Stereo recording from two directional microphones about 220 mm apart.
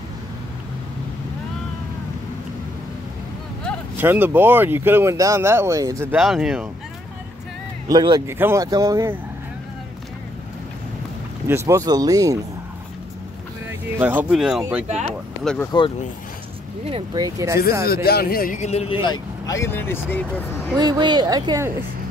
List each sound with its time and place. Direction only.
4.0 s speech: 10° right (ahead or behind)
6.1 s speech: centre (ahead or behind)
7.9 s speech: 20° right (ahead or behind)
11.4 s speech: 10° right (ahead or behind)
13.9 s speech: 10° right (ahead or behind)
16.8 s speech: 20° right (ahead or behind)
17.8 s speech: 45° left (ahead or behind); by 20.4 s 10° left (ahead or behind)
20.7 s speech: 20° right (ahead or behind)